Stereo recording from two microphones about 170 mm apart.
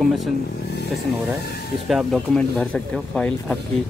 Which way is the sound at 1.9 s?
Centre (ahead or behind).